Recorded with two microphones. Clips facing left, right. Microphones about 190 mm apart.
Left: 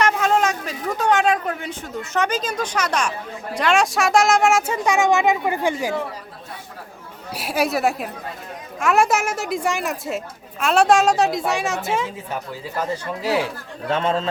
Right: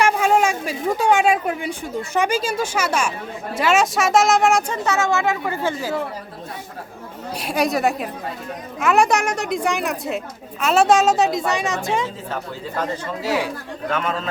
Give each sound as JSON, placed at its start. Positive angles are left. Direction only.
{"t": 0.0, "sound": "a woman's voice", "side_deg": -10}
{"t": 7.3, "sound": "a woman's voice", "side_deg": 5}
{"t": 13.9, "sound": "a man's voice", "side_deg": 30}